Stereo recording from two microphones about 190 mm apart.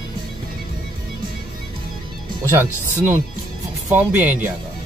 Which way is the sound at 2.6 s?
15° right (ahead or behind).